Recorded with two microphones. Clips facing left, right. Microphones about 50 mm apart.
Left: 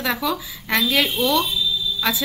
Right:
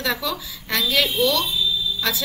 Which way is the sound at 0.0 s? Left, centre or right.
Centre.